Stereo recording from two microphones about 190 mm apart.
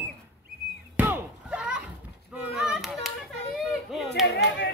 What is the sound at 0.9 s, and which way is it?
Slam, 10° right (ahead or behind).